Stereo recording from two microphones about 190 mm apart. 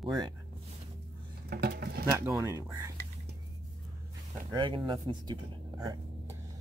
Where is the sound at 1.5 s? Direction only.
55° right (ahead or behind).